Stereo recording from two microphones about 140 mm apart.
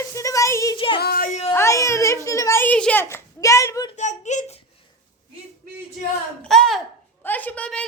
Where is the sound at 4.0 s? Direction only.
60° left (ahead or behind).